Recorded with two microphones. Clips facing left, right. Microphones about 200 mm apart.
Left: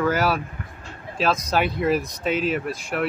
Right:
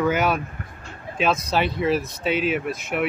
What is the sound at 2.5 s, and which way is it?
Speech, 5° right (ahead or behind).